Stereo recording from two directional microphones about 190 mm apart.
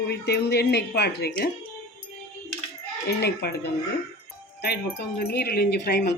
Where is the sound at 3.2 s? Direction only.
60° left (ahead or behind).